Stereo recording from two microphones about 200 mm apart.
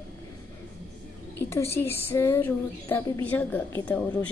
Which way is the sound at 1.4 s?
15° left (ahead or behind).